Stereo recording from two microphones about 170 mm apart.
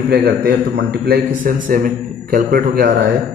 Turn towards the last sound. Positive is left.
turn(degrees=-55)  # may be behind; listen again after turning